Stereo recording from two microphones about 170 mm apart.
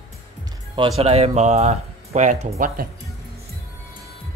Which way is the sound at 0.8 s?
35° right (ahead or behind).